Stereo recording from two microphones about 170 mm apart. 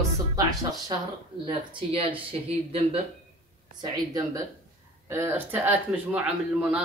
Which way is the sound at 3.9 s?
20° right (ahead or behind).